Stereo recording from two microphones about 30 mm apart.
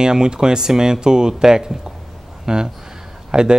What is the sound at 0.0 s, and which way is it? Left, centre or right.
Speech, right.